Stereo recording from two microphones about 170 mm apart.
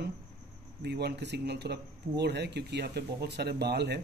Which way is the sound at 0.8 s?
75° right (ahead or behind).